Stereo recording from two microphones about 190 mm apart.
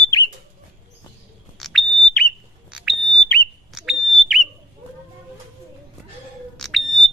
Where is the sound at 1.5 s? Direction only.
Centre (ahead or behind).